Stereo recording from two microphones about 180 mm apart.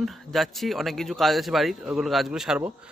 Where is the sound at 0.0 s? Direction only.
Centre (ahead or behind).